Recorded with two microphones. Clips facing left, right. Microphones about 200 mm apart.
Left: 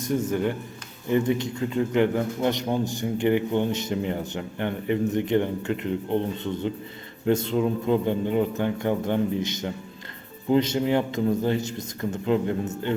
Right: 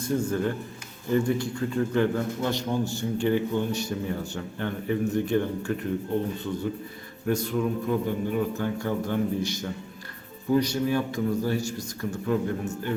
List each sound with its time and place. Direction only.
0.0 s a man's voice: 20° left (ahead or behind)